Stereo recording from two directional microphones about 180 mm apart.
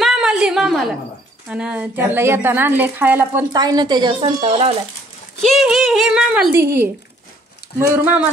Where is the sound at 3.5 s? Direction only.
20° right (ahead or behind).